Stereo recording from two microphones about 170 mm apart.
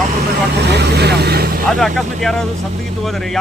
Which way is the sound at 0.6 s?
80° right.